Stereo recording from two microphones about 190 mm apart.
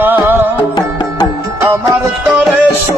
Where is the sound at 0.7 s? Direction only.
20° left (ahead or behind).